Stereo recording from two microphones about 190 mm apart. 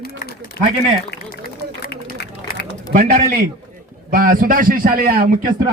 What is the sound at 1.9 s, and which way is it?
Run, 60° left (ahead or behind).